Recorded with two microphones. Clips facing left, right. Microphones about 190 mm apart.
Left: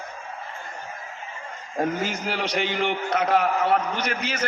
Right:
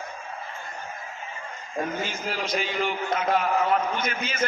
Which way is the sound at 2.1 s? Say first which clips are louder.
Left 2 dB; 75° left (ahead or behind).